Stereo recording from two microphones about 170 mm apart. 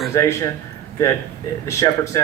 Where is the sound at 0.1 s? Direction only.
15° left (ahead or behind).